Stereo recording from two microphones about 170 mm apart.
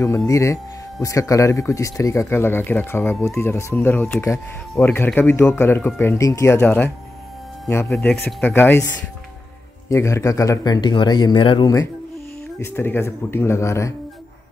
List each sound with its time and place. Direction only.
0.3 s speech: 15° left (ahead or behind)
9.8 s speech: 15° left (ahead or behind)